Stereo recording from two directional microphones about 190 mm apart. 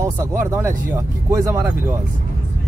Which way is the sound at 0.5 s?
15° right (ahead or behind).